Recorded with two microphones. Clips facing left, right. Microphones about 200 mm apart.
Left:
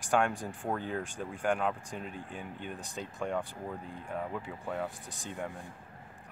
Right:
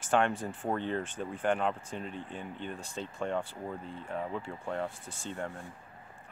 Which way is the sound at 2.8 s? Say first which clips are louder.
Right 1 dB; 15° left (ahead or behind).